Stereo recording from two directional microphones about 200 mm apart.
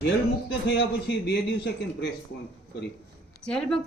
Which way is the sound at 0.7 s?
60° left (ahead or behind).